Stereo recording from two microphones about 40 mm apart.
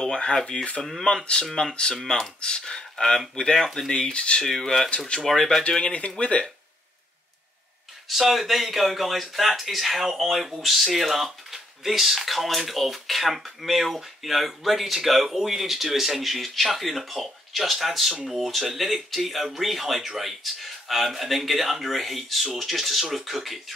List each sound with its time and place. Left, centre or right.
0.0 s speech: centre
3.9 s speech: left
4.5 s speech: centre
4.8 s speech: left
5.2 s speech: centre
5.6 s speech: left
8.1 s speech: centre